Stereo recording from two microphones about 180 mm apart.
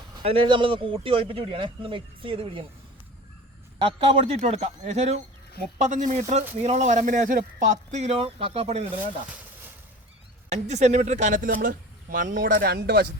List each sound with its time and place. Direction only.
0.2 s speech: 30° right (ahead or behind)
3.8 s speech: 30° right (ahead or behind)
10.5 s speech: 40° right (ahead or behind); by 13.1 s 65° right (ahead or behind)